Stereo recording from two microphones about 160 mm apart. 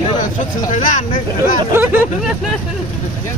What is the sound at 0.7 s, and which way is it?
Speech, 55° left (ahead or behind).